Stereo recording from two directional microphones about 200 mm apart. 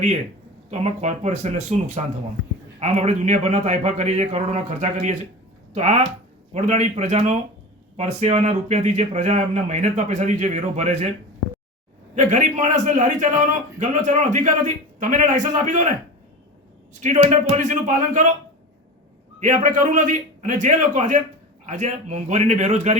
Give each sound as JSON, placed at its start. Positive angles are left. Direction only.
{"t": 0.7, "sound": "a man's voice", "side_deg": -30}
{"t": 12.1, "sound": "a man's voice", "side_deg": -40}
{"t": 16.9, "sound": "a man's voice", "side_deg": -35}
{"t": 19.4, "sound": "a man's voice", "side_deg": -35}